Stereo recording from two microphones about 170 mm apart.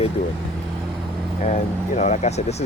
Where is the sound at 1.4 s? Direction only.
45° left (ahead or behind).